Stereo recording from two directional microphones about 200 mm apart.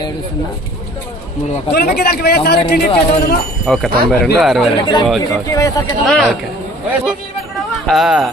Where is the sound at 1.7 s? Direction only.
50° left (ahead or behind).